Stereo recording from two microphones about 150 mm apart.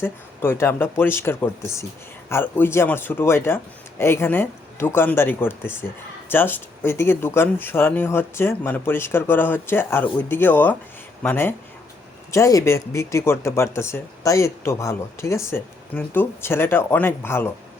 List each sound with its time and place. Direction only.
0.0 s speech: 15° left (ahead or behind)